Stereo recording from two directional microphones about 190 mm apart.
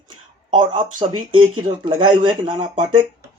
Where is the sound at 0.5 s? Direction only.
25° right (ahead or behind).